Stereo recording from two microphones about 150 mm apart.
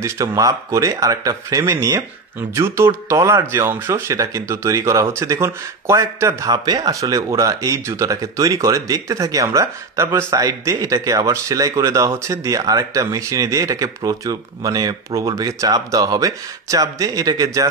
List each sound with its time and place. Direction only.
0.0 s speech: 25° right (ahead or behind)